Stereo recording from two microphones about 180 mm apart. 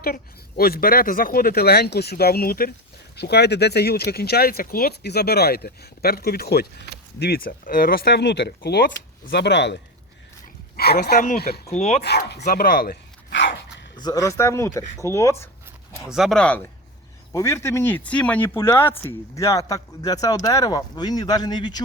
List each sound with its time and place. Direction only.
0.0 s speech: 55° left (ahead or behind)
3.2 s speech: 65° left (ahead or behind)
10.8 s speech: 60° left (ahead or behind)
11.7 s speech: 40° left (ahead or behind)
12.0 s speech: 65° left (ahead or behind)
12.5 s dog: 55° left (ahead or behind); by 13.8 s 85° left
13.9 s speech: 20° left (ahead or behind)
16.0 s speech: centre (ahead or behind)
17.3 s speech: 15° left (ahead or behind)